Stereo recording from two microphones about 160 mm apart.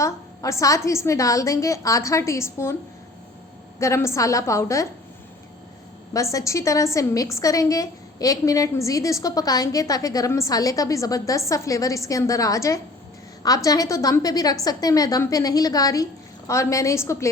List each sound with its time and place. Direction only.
0.0 s a woman's voice: 20° left (ahead or behind)
3.8 s a woman's voice: 20° left (ahead or behind)
6.3 s a woman's voice: 20° left (ahead or behind)